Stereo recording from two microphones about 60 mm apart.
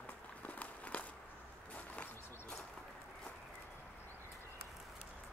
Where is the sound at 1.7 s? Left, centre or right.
Left.